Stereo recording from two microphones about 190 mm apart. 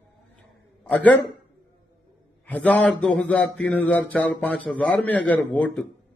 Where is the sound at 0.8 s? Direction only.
10° left (ahead or behind).